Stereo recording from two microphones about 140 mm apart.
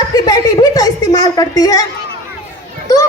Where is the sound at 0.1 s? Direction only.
25° left (ahead or behind).